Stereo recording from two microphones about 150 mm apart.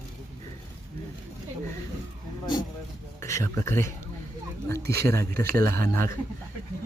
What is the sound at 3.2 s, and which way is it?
Speech, 20° left (ahead or behind).